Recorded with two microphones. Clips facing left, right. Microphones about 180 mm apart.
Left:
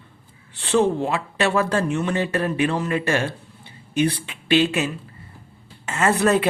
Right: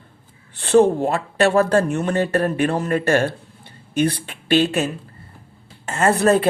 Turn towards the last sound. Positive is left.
turn(degrees=-35)  # may be behind; listen again after turning